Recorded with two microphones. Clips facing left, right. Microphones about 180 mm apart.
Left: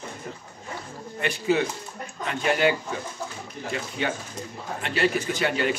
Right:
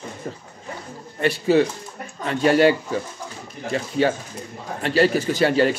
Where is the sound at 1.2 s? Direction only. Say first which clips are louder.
Right 6 dB; 35° right (ahead or behind).